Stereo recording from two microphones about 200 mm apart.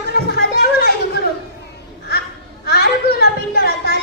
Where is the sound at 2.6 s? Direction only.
55° left (ahead or behind).